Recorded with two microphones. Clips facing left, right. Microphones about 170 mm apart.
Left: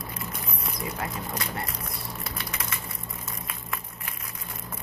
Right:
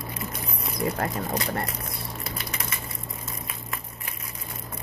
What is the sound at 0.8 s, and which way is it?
Speech, 45° right (ahead or behind).